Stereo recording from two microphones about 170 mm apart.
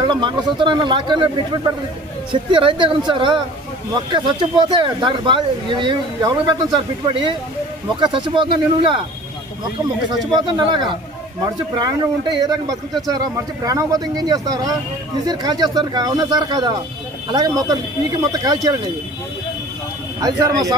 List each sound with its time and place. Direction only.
0.0 s speech: 25° right (ahead or behind)
10.3 s speech: 25° right (ahead or behind)
20.2 s speech: 20° right (ahead or behind)